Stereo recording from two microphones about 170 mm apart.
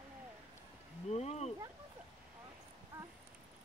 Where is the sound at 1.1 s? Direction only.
40° left (ahead or behind).